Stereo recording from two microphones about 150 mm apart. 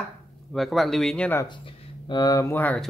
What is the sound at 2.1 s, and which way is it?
Speech, 25° left (ahead or behind).